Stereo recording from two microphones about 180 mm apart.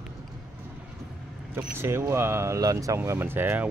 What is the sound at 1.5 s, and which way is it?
Speech, 15° right (ahead or behind).